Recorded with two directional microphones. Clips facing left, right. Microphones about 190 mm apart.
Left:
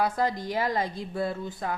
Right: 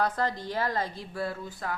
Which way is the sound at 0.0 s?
10° left (ahead or behind).